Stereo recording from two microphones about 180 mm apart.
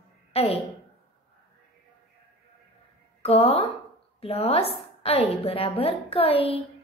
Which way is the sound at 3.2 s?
35° left (ahead or behind).